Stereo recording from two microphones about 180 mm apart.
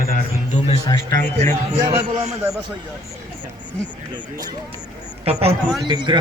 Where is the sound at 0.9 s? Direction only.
20° left (ahead or behind).